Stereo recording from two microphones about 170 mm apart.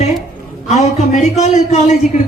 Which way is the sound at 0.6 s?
40° left (ahead or behind).